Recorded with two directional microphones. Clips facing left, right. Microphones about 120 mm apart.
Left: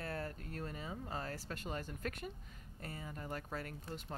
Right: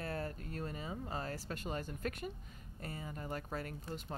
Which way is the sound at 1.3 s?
35° right (ahead or behind).